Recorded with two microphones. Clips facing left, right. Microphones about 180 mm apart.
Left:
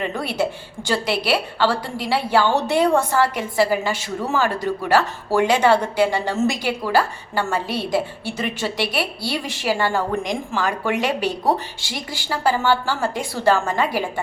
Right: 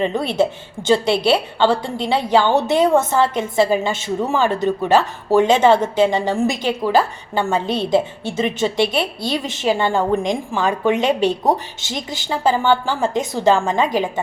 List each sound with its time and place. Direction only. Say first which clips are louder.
0.0 s a woman's voice: right 5 dB; 25° right (ahead or behind)